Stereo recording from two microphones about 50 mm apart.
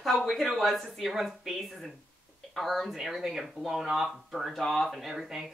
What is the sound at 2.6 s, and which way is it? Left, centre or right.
A woman's voice, centre.